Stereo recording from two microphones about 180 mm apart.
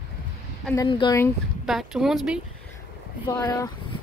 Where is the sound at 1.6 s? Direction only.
Centre (ahead or behind).